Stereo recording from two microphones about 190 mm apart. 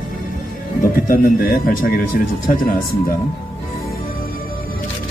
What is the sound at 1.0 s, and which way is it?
A man's voice, 50° left (ahead or behind).